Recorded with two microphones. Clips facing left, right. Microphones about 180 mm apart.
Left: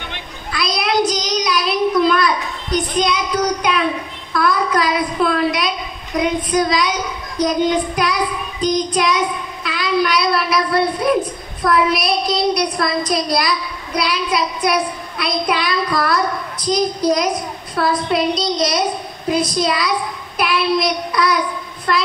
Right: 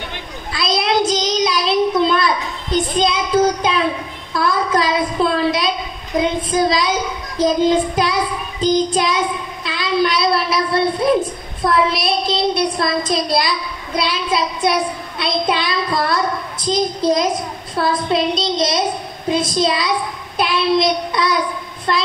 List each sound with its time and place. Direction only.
0.5 s child singing: 25° right (ahead or behind)
4.3 s a sound: 25° right (ahead or behind)
6.1 s a woman's voice: 25° right (ahead or behind)
20.3 s child singing: 25° right (ahead or behind)
21.9 s a woman's voice: 25° right (ahead or behind)